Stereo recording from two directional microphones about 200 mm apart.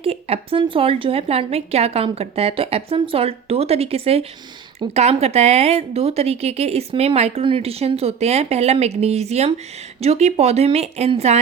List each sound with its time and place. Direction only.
0.0 s a woman's voice: 30° right (ahead or behind)